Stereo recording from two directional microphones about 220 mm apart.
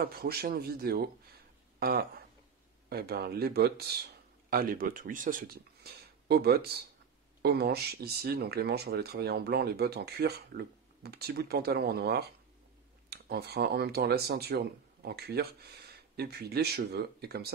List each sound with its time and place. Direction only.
0.0 s speech: 45° right (ahead or behind)